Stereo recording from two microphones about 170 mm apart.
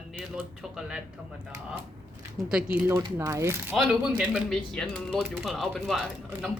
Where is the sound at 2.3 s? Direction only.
5° right (ahead or behind).